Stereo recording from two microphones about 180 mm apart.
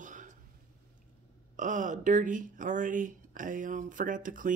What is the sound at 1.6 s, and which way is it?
Speech, 45° right (ahead or behind).